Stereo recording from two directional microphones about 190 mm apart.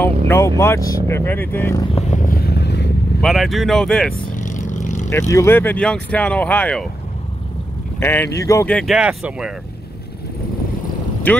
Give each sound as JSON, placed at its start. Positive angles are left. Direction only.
{"t": 0.3, "sound": "speech", "side_deg": 15}
{"t": 2.0, "sound": "vehicle", "side_deg": 40}
{"t": 3.2, "sound": "speech", "side_deg": 0}
{"t": 4.3, "sound": "vehicle", "side_deg": 40}
{"t": 5.3, "sound": "speech", "side_deg": 15}
{"t": 8.0, "sound": "speech", "side_deg": 10}
{"t": 11.3, "sound": "speech", "side_deg": 10}